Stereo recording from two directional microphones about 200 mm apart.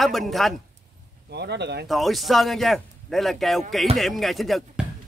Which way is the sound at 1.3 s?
55° right (ahead or behind).